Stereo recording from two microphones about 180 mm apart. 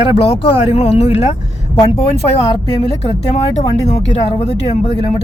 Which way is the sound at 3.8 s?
35° left (ahead or behind).